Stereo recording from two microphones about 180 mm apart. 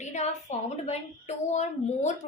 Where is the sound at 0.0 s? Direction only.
40° left (ahead or behind).